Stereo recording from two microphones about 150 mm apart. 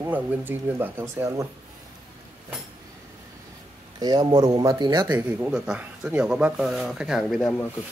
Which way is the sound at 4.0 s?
25° right (ahead or behind).